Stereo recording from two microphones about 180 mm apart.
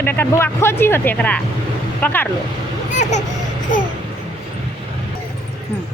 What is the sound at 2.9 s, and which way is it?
Vehicle, 40° left (ahead or behind).